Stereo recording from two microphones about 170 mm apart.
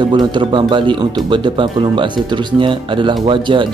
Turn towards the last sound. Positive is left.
turn(degrees=-30)  # may be behind; listen again after turning